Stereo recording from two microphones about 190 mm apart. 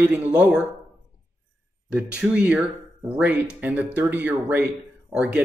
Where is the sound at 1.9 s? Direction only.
5° right (ahead or behind).